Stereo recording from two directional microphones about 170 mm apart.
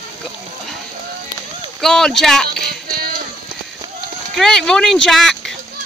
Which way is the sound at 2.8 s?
60° right (ahead or behind).